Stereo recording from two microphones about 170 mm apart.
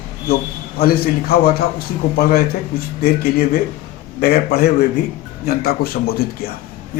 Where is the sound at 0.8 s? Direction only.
65° left (ahead or behind).